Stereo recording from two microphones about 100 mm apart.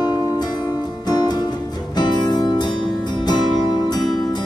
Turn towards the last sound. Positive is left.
turn(degrees=45)  # may be behind; listen again after turning